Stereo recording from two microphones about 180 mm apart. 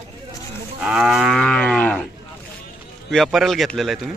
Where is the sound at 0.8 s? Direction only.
5° right (ahead or behind).